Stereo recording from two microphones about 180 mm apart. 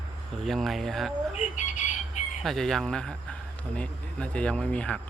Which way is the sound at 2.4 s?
Centre (ahead or behind).